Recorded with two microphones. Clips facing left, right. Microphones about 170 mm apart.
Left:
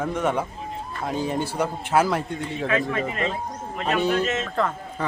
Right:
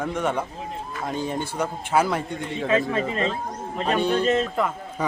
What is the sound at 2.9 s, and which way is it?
Speech, 30° right (ahead or behind).